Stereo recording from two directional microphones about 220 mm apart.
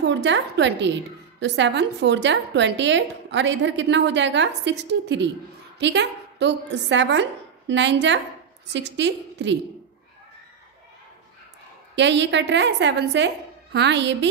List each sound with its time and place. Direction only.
0.0 s a woman's voice: 55° right (ahead or behind)
11.9 s a woman's voice: 55° right (ahead or behind)